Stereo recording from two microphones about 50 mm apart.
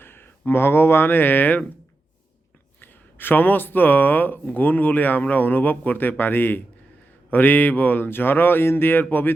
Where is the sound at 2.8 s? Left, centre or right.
Left.